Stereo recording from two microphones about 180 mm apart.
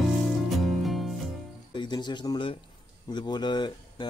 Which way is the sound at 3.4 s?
25° left (ahead or behind).